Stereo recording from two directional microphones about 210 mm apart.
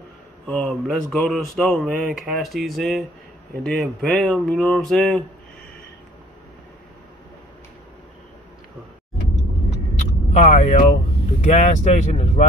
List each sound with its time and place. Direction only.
0.5 s speech: 5° left (ahead or behind)
10.3 s speech: 35° left (ahead or behind)